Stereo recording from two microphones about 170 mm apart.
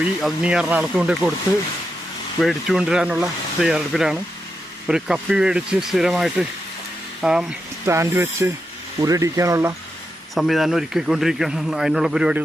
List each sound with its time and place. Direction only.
0.0 s speech: 5° right (ahead or behind)
2.4 s a man's voice: centre (ahead or behind)
7.9 s speech: 15° right (ahead or behind)
10.3 s a man's voice: centre (ahead or behind)